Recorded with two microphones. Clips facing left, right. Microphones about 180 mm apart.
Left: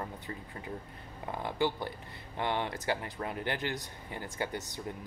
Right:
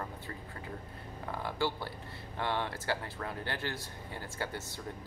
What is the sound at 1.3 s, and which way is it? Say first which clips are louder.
Speech: left 3 dB; 20° left (ahead or behind).